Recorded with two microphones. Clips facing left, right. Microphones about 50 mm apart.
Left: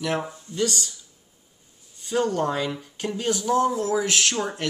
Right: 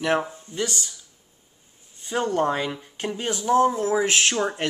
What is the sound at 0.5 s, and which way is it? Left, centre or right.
Speech, right.